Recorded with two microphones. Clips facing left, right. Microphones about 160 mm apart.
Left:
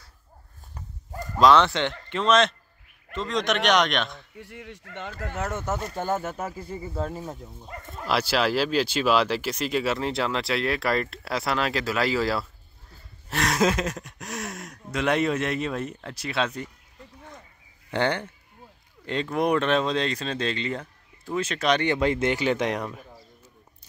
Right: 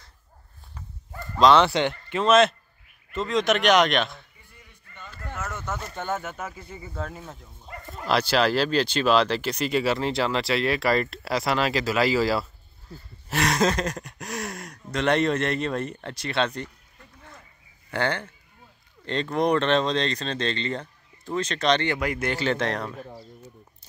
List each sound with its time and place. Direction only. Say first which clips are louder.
1.4 s speech: right 1 dB; centre (ahead or behind)
4.4 s speech: left 15 dB; 80° left
5.4 s speech: left 4 dB; 50° left (ahead or behind)
5.9 s speech: left 3 dB; 35° left (ahead or behind)
8.0 s speech: right 2 dB; 5° left (ahead or behind)
17.9 s speech: left 2 dB; 15° left (ahead or behind)
19.3 s speech: right 1 dB; 5° left (ahead or behind)
21.9 s speech: left 4 dB; 25° left (ahead or behind)